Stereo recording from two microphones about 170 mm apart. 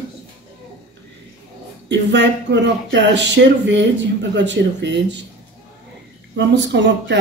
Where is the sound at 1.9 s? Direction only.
90° right.